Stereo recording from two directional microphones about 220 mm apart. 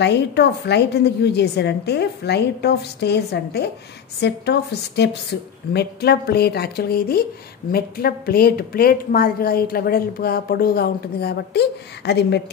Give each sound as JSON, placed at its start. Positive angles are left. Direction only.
{"t": 0.0, "sound": "a woman's voice", "side_deg": 50}